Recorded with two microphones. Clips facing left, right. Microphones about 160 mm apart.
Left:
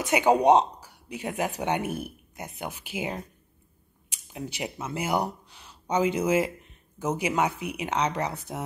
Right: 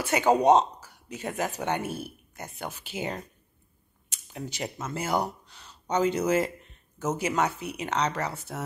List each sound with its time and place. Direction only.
0.0 s speech: 15° left (ahead or behind)